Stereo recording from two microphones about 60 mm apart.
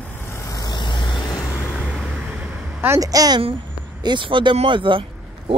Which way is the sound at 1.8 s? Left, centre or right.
Centre.